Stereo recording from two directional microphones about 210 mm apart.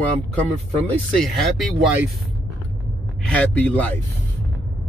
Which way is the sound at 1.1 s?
Centre (ahead or behind).